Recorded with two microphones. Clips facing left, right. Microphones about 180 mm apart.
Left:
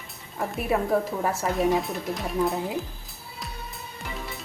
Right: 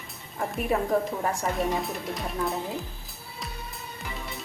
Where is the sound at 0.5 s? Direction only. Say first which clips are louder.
Left 1 dB; 5° left (ahead or behind).